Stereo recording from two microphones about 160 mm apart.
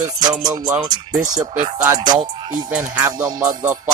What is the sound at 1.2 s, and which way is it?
Speech, 50° right (ahead or behind).